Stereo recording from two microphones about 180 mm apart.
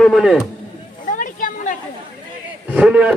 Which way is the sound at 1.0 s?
50° left (ahead or behind).